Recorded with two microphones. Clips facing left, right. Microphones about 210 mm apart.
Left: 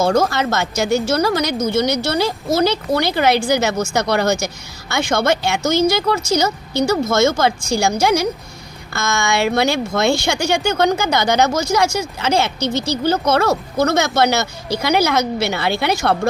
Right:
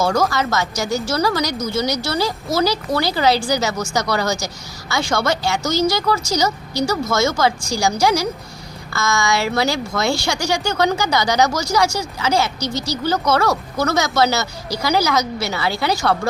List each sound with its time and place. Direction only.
0.0 s speech: 25° left (ahead or behind)
12.7 s speech: 55° left (ahead or behind)
13.1 s speech: 25° left (ahead or behind)